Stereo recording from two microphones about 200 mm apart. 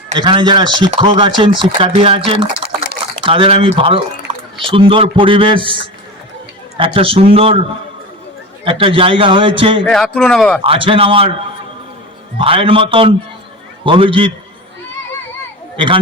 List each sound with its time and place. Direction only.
0.2 s a man's voice: 25° right (ahead or behind)
8.6 s a man's voice: 25° right (ahead or behind)
9.8 s speech: 5° left (ahead or behind)
10.6 s a man's voice: 25° right (ahead or behind)
12.4 s a man's voice: 25° right (ahead or behind)